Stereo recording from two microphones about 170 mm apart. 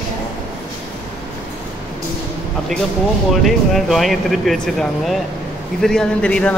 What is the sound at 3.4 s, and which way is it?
Speech, centre (ahead or behind).